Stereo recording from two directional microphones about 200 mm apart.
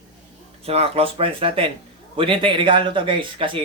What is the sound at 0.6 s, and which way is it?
Speech, 30° right (ahead or behind).